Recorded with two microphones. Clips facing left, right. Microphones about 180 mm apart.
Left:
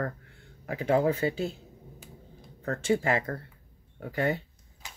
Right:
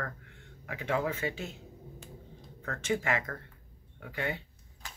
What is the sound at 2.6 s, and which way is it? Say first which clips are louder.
Speech: left 6 dB; 35° left (ahead or behind).